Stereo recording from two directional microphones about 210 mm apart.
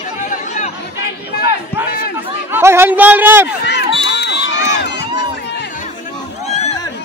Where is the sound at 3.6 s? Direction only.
55° left (ahead or behind).